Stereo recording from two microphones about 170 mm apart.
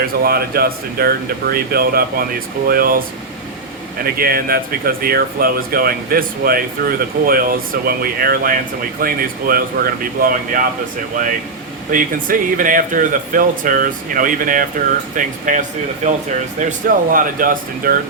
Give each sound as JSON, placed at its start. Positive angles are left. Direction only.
{"t": 0.0, "sound": "speech", "side_deg": -60}
{"t": 4.0, "sound": "speech", "side_deg": -60}
{"t": 11.9, "sound": "speech", "side_deg": -55}